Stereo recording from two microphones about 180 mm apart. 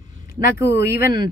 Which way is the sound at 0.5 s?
15° right (ahead or behind).